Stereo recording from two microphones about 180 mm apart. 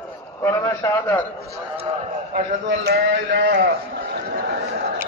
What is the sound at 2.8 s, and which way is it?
Speech, 70° right (ahead or behind).